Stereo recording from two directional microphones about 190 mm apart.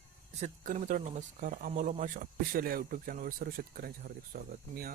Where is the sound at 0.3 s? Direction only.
40° right (ahead or behind).